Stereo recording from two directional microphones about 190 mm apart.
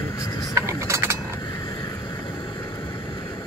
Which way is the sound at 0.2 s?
20° left (ahead or behind).